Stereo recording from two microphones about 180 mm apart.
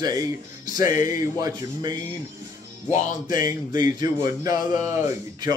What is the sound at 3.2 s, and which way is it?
Speech, 20° right (ahead or behind).